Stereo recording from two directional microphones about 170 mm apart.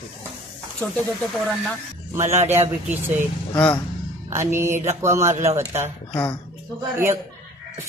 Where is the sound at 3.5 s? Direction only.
10° left (ahead or behind).